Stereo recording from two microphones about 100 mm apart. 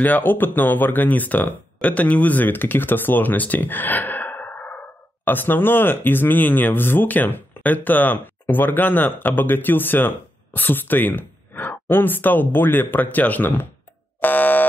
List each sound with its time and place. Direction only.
0.0 s speech: 20° left (ahead or behind)
14.2 s fire alarm: 20° left (ahead or behind)